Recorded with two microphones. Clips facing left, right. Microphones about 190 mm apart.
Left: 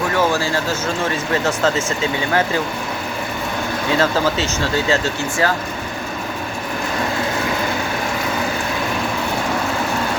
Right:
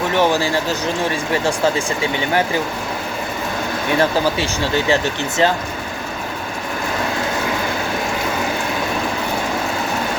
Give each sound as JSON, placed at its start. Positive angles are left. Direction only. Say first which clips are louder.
{"t": 0.2, "sound": "speech", "louder": "right 3 dB", "side_deg": -15}
{"t": 3.9, "sound": "speech", "louder": "right 1 dB", "side_deg": -15}